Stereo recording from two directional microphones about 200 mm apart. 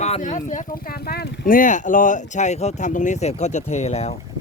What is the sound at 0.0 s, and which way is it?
Speech, 35° left (ahead or behind).